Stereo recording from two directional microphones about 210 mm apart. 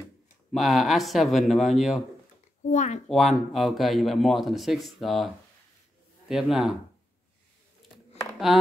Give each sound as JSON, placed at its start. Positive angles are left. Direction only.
{"t": 0.5, "sound": "a man's voice", "side_deg": 0}
{"t": 2.6, "sound": "speech", "side_deg": 35}
{"t": 3.1, "sound": "a man's voice", "side_deg": 0}